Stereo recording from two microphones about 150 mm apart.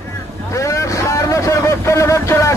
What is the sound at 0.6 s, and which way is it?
Vehicle, 20° left (ahead or behind).